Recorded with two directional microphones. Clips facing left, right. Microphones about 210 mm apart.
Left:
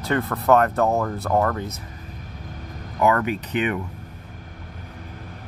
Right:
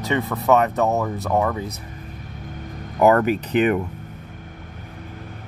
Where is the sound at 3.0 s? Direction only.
40° right (ahead or behind).